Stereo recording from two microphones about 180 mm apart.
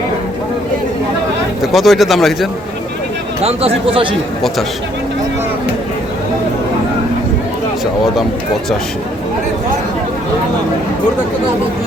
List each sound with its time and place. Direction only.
1.6 s speech: centre (ahead or behind)
3.4 s speech: 35° right (ahead or behind)